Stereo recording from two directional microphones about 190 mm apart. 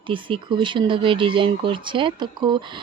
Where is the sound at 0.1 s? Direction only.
25° right (ahead or behind).